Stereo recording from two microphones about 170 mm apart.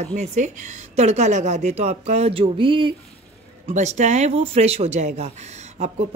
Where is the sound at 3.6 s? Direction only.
45° right (ahead or behind).